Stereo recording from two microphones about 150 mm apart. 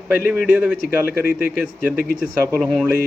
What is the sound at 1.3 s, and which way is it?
Speech, 75° left (ahead or behind).